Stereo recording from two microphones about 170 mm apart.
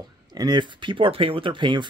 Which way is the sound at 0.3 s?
25° right (ahead or behind).